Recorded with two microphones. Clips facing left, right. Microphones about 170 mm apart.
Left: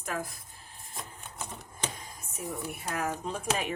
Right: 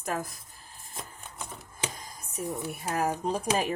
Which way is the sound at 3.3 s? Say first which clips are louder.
Right 4 dB; 35° right (ahead or behind).